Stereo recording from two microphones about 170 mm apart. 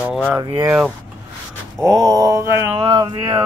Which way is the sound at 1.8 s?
20° right (ahead or behind).